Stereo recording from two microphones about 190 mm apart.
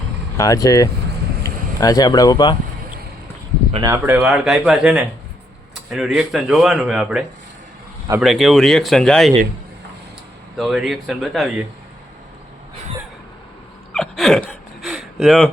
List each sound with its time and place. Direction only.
0.3 s speech: 20° left (ahead or behind)
3.8 s speech: 15° right (ahead or behind); by 9.3 s 5° left (ahead or behind)
10.6 s speech: centre (ahead or behind)
13.9 s a sound: 5° left (ahead or behind)